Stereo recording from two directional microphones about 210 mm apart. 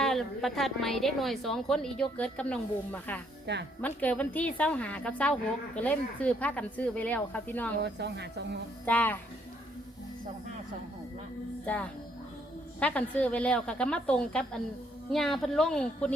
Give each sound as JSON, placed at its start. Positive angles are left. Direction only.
{"t": 0.0, "sound": "a woman's voice", "side_deg": 0}
{"t": 3.4, "sound": "speech", "side_deg": -55}
{"t": 3.8, "sound": "a woman's voice", "side_deg": 5}
{"t": 7.8, "sound": "speech", "side_deg": -55}
{"t": 8.9, "sound": "a woman's voice", "side_deg": 10}
{"t": 11.6, "sound": "a woman's voice", "side_deg": 5}